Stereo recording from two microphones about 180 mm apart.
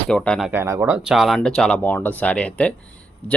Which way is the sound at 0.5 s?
15° right (ahead or behind).